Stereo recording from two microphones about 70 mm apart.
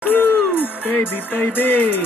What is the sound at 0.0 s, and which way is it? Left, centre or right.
Music, left.